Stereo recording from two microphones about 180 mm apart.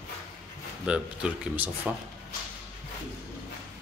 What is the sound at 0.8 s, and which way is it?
Speech, 5° right (ahead or behind).